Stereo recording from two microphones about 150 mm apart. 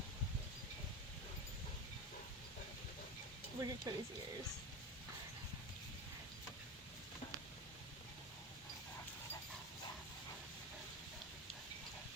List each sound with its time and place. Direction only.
3.6 s speech: 25° right (ahead or behind)